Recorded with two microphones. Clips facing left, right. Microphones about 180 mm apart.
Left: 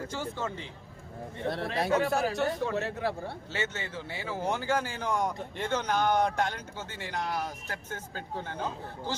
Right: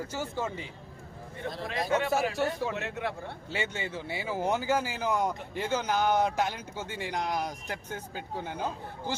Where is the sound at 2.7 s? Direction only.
35° left (ahead or behind).